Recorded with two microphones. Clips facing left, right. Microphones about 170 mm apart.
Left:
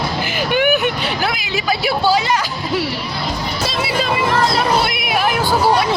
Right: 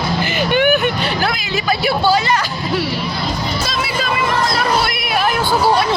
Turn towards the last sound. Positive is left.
turn(degrees=15)  # may be behind; listen again after turning